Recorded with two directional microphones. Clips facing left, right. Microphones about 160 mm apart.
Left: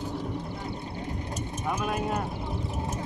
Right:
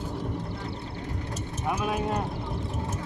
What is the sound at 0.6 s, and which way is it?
Vehicle, 15° left (ahead or behind).